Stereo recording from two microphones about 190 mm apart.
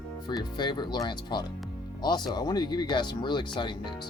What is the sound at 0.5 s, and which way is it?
Speech, 25° left (ahead or behind).